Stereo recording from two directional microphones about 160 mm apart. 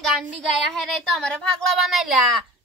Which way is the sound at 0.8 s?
Centre (ahead or behind).